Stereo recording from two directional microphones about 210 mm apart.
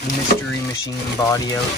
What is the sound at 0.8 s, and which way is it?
Speech, 15° left (ahead or behind).